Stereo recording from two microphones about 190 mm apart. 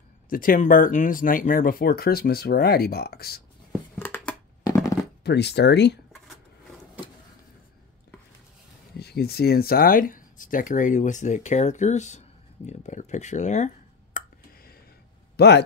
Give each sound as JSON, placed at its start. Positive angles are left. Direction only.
{"t": 0.3, "sound": "speech", "side_deg": 45}
{"t": 4.0, "sound": "a sound", "side_deg": 10}
{"t": 5.2, "sound": "speech", "side_deg": 60}
{"t": 8.9, "sound": "speech", "side_deg": 60}
{"t": 14.1, "sound": "a sound", "side_deg": 50}
{"t": 15.3, "sound": "speech", "side_deg": 60}